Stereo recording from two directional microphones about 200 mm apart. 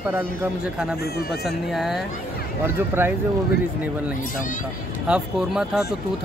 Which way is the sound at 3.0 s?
10° right (ahead or behind).